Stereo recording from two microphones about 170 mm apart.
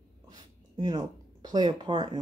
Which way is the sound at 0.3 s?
25° right (ahead or behind).